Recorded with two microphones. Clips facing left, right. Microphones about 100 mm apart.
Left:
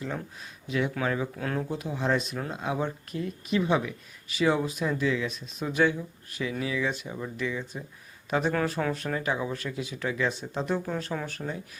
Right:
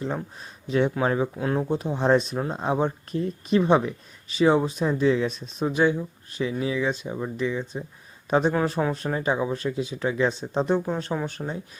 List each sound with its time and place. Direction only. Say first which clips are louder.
0.0 s speech: right 5 dB; 35° right (ahead or behind)